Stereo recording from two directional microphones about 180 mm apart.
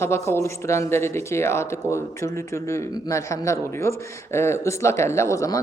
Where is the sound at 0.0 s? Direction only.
15° left (ahead or behind).